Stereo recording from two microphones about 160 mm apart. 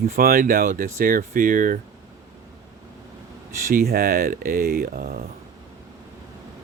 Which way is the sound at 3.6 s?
65° right (ahead or behind).